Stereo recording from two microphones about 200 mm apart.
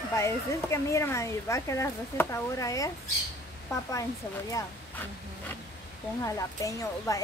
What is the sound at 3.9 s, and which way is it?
Speech, 15° left (ahead or behind).